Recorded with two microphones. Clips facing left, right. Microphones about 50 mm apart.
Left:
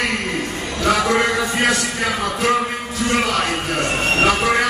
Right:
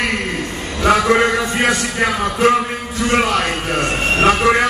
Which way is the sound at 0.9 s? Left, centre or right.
Centre.